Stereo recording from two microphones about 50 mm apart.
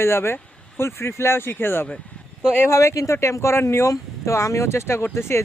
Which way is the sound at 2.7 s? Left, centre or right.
Left.